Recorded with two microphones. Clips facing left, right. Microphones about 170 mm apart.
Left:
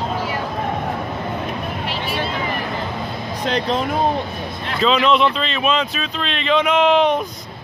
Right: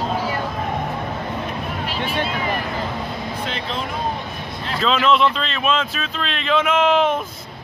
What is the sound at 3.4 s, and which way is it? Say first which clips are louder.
Speech: left 7 dB; 40° left (ahead or behind).